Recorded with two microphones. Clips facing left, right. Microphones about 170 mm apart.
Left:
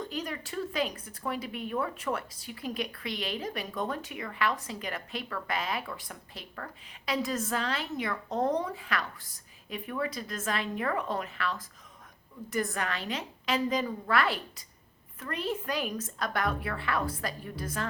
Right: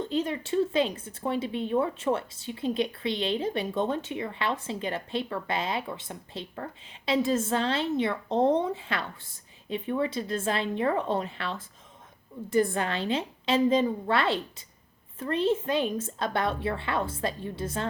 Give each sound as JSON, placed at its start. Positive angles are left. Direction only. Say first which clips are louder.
{"t": 0.0, "sound": "speech", "louder": "right 7 dB", "side_deg": -25}